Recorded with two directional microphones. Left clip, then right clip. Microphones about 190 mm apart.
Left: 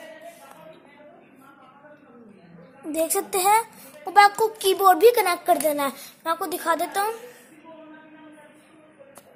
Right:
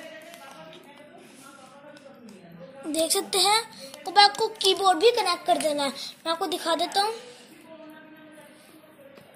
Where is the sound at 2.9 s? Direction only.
5° left (ahead or behind).